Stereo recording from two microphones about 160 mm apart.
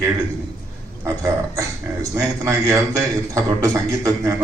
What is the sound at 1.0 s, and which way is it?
Speech, 20° right (ahead or behind).